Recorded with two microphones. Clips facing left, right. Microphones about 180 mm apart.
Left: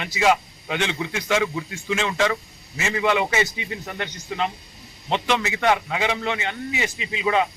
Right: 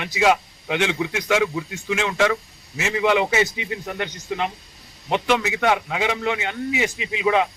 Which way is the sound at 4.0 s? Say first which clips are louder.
Even; 10° right (ahead or behind).